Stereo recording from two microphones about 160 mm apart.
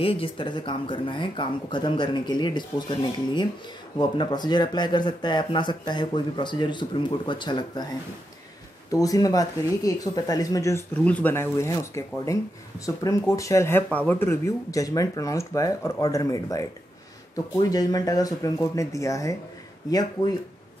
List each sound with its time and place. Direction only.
0.0 s speech: 35° left (ahead or behind)
8.9 s speech: 20° left (ahead or behind)